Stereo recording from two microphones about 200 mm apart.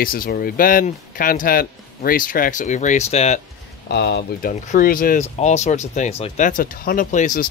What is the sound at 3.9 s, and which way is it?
Speech, 55° left (ahead or behind).